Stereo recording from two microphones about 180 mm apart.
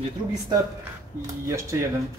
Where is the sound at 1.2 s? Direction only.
20° right (ahead or behind).